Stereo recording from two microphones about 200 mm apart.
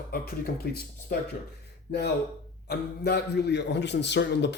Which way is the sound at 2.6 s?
55° left (ahead or behind).